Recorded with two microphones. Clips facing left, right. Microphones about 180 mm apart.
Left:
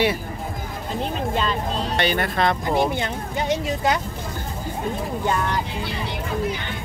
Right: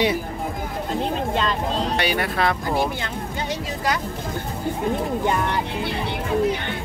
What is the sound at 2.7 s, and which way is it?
Speech, 20° left (ahead or behind).